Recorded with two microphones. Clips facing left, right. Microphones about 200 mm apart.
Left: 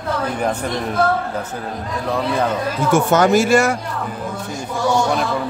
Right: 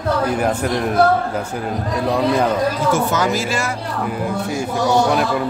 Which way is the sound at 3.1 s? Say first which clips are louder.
Left 6 dB; 60° left (ahead or behind).